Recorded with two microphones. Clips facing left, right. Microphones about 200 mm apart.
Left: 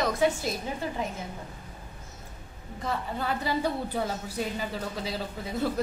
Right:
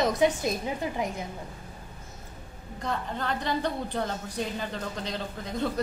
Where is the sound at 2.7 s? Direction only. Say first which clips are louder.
Even; 5° left (ahead or behind).